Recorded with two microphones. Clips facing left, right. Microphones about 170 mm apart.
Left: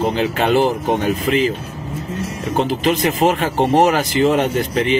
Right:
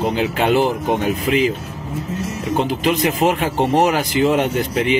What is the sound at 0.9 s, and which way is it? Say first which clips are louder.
Speech: left 1 dB; 10° right (ahead or behind).